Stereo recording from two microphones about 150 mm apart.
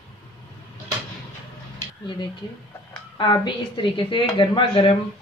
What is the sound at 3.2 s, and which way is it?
A woman's voice, 30° left (ahead or behind).